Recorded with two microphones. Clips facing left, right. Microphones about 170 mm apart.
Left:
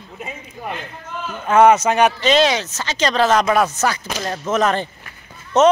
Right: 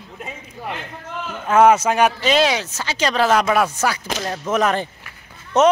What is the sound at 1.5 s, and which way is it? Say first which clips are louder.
Speech: left 1 dB; 5° right (ahead or behind).